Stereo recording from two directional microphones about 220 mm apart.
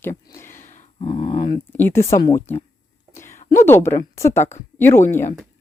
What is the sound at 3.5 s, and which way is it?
Speech, 10° left (ahead or behind).